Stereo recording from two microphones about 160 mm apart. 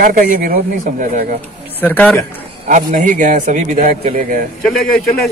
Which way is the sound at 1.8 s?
10° left (ahead or behind).